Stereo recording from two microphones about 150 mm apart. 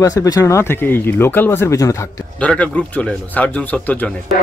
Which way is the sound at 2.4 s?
5° left (ahead or behind).